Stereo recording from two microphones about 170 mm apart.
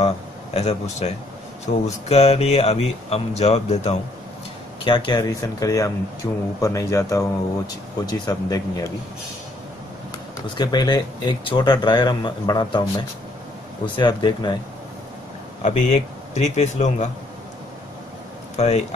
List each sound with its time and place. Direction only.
0.0 s speech: 40° left (ahead or behind)
4.8 s speech: 25° left (ahead or behind)
10.6 s speech: 25° left (ahead or behind)
13.8 s speech: 30° left (ahead or behind)
15.6 s a man's voice: 45° left (ahead or behind)
18.6 s speech: 40° left (ahead or behind)